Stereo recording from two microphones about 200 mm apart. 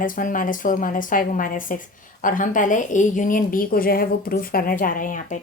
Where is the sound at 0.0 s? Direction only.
40° left (ahead or behind).